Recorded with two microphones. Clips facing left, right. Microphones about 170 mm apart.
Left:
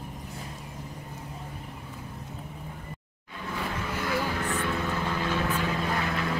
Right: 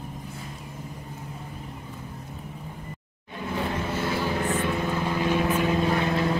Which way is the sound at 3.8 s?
25° right (ahead or behind).